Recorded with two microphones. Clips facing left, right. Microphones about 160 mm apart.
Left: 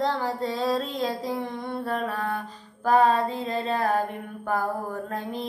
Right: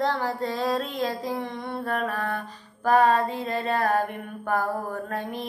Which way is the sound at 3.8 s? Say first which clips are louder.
Right 2 dB; 10° left (ahead or behind).